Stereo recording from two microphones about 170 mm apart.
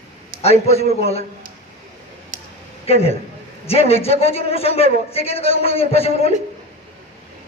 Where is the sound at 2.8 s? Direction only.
35° left (ahead or behind).